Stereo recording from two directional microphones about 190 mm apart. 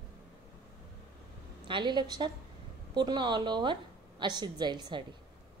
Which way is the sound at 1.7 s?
25° right (ahead or behind).